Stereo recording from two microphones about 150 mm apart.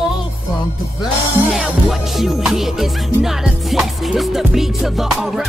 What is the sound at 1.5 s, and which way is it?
Music, centre (ahead or behind).